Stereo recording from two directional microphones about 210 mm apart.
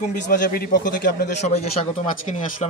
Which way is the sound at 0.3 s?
40° left (ahead or behind).